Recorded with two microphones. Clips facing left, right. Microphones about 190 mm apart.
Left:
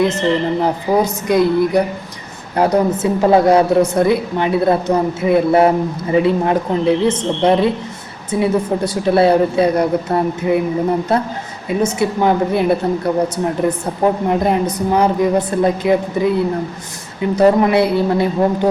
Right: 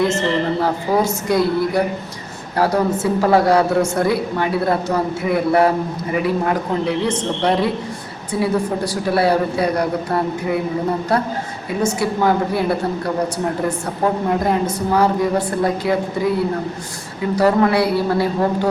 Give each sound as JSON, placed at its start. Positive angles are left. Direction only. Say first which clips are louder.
{"t": 0.0, "sound": "a woman's voice", "louder": "left 2 dB", "side_deg": 20}
{"t": 17.3, "sound": "a woman's voice", "louder": "left 3 dB", "side_deg": 20}